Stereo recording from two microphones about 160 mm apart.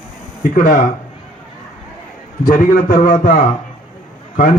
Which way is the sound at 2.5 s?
55° left (ahead or behind).